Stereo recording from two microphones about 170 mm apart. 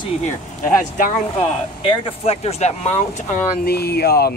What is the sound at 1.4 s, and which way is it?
Speech, 35° left (ahead or behind).